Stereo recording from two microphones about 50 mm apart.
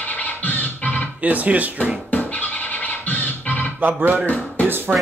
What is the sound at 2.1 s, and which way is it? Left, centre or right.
Music, left.